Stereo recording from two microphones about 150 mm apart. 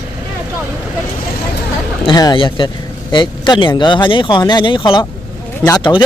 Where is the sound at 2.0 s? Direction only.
30° left (ahead or behind).